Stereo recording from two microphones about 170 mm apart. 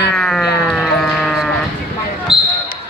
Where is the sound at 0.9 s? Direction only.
Centre (ahead or behind).